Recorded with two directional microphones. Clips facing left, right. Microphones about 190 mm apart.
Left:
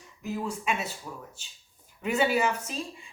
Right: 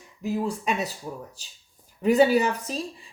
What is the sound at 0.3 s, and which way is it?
Speech, 35° right (ahead or behind).